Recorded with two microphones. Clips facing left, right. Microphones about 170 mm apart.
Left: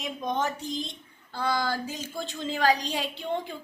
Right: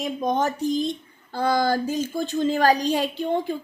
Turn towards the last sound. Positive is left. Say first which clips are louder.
# right 7 dB
turn(degrees=-45)  # may be behind; listen again after turning